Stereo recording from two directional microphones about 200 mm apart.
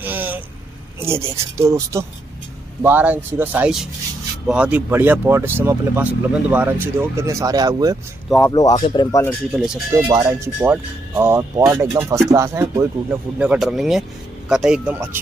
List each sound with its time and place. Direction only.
0.0 s vehicle: 10° right (ahead or behind)
1.0 s speech: 10° right (ahead or behind)
8.5 s speech: 20° left (ahead or behind)
9.5 s speech: 5° right (ahead or behind)
13.4 s speech: 5° right (ahead or behind)